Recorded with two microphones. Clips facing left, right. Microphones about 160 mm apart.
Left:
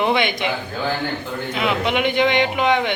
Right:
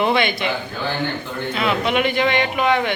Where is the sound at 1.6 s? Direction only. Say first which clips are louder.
Right 1 dB; 15° left (ahead or behind).